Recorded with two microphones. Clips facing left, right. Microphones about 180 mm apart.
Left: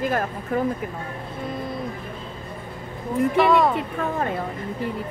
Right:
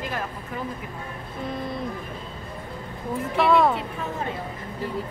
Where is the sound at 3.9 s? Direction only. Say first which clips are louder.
Left 5 dB; 55° left (ahead or behind).